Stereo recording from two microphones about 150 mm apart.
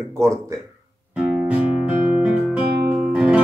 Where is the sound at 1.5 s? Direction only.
10° right (ahead or behind).